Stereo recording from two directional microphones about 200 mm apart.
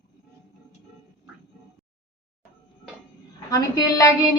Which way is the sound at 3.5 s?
15° left (ahead or behind).